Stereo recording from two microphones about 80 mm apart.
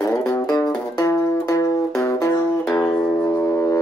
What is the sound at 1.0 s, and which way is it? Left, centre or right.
Music, left.